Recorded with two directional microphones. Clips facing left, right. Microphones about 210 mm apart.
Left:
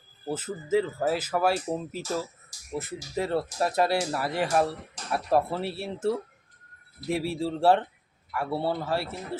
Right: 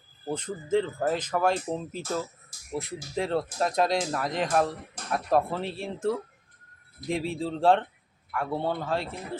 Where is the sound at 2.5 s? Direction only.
55° right (ahead or behind).